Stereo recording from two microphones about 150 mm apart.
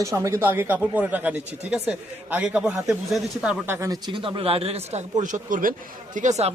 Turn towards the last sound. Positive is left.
turn(degrees=-50)  # may be behind; listen again after turning